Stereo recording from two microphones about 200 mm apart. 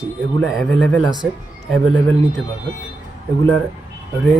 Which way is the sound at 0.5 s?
5° left (ahead or behind).